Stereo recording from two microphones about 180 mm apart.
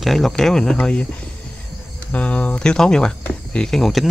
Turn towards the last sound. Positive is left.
turn(degrees=0)  # may be behind; listen again after turning